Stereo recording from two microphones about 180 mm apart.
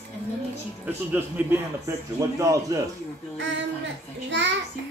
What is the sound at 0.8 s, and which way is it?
A man's voice, 10° right (ahead or behind).